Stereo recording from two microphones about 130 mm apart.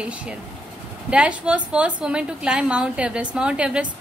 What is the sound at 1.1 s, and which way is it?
A woman's voice, 10° right (ahead or behind).